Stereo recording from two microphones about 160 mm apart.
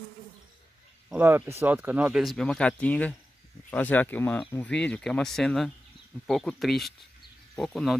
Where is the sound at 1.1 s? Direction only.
10° right (ahead or behind).